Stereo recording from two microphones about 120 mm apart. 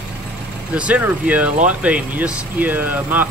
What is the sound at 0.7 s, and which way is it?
Speech, 10° right (ahead or behind).